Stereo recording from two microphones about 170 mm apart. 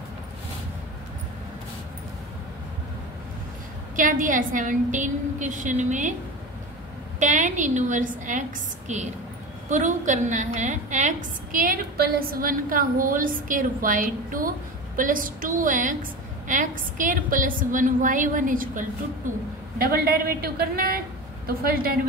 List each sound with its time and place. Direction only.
3.9 s a woman's voice: 50° right (ahead or behind)
7.2 s a woman's voice: 45° right (ahead or behind)